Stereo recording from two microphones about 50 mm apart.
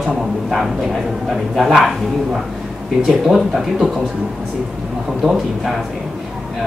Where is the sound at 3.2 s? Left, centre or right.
Centre.